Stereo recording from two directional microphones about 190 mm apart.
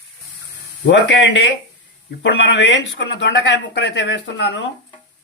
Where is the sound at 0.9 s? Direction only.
70° left (ahead or behind).